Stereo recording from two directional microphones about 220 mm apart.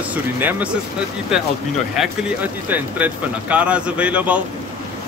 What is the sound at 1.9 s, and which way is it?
Speech, 5° right (ahead or behind).